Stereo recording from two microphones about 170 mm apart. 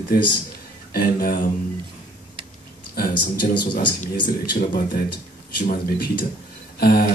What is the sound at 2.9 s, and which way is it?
Speech, 55° left (ahead or behind).